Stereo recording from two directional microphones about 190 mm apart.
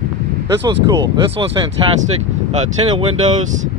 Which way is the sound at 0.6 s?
20° right (ahead or behind).